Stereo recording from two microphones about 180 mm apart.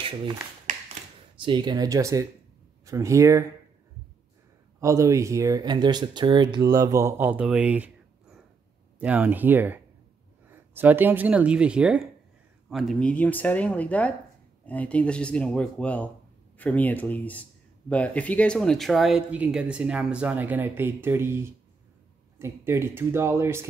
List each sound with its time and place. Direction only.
0.0 s speech: 30° right (ahead or behind)
0.7 s a sound: 45° right (ahead or behind)
1.4 s speech: 25° right (ahead or behind)
4.7 s speech: 15° right (ahead or behind)